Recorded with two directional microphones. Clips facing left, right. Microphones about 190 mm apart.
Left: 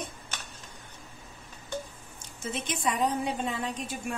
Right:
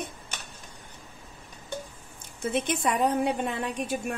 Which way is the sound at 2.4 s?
60° right (ahead or behind).